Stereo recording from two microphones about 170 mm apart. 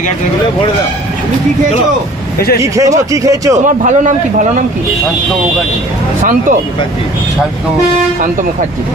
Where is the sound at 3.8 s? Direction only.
45° right (ahead or behind).